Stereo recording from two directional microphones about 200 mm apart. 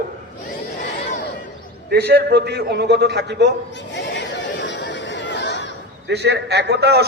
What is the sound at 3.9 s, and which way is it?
Chatter, 60° left (ahead or behind).